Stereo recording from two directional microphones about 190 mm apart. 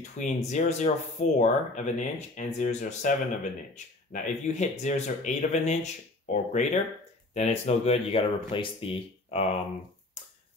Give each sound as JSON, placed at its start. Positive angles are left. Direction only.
{"t": 0.2, "sound": "speech", "side_deg": 40}